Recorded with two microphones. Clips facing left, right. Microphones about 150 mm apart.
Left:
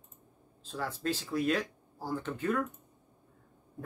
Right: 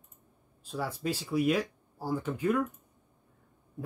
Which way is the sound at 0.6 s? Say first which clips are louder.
Right 1 dB; 10° right (ahead or behind).